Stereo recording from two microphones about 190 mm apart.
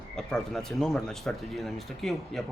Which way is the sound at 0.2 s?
5° left (ahead or behind).